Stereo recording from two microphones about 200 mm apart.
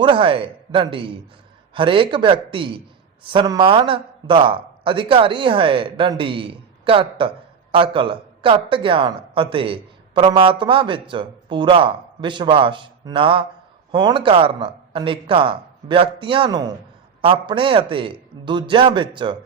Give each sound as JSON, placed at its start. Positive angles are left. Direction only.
{"t": 0.0, "sound": "speech", "side_deg": -25}